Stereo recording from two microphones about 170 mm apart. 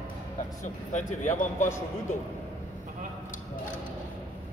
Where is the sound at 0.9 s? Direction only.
45° left (ahead or behind).